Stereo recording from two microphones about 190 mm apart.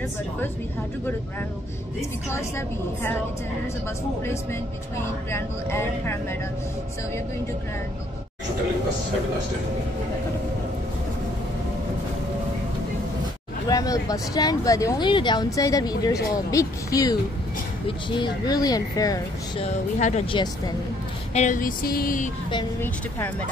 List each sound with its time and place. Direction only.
2.3 s speech: 15° left (ahead or behind)
5.3 s speech: 15° left (ahead or behind)
13.7 s speech: 20° left (ahead or behind)
19.6 s speech: 35° left (ahead or behind)
21.3 s a sound: 40° left (ahead or behind)
22.8 s speech: 10° left (ahead or behind)